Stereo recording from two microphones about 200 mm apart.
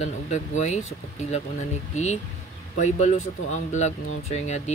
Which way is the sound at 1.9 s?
35° left (ahead or behind).